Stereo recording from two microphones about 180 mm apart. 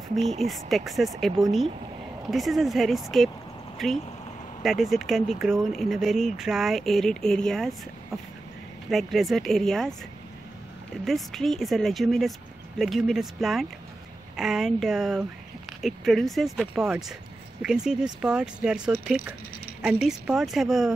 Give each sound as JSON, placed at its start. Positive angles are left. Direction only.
{"t": 0.2, "sound": "speech", "side_deg": -40}
{"t": 0.5, "sound": "speech", "side_deg": 0}
{"t": 11.1, "sound": "speech", "side_deg": 0}